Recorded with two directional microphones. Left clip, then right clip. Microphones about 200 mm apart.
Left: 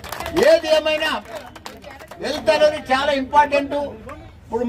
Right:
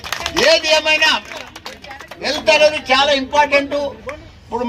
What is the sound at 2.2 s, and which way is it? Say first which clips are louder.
Speech: right 4 dB; 60° left (ahead or behind).